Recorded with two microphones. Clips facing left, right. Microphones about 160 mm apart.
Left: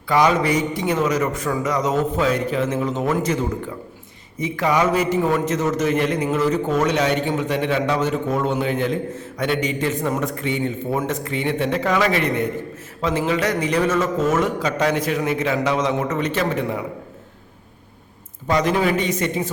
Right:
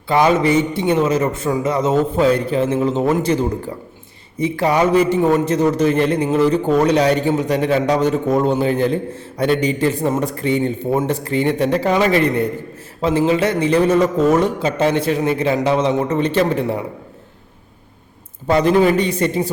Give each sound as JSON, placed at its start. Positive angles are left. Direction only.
{"t": 0.1, "sound": "a man's voice", "side_deg": -25}
{"t": 18.4, "sound": "a man's voice", "side_deg": -30}